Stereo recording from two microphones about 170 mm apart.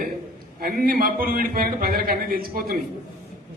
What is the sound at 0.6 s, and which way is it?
A man's voice, 55° right (ahead or behind).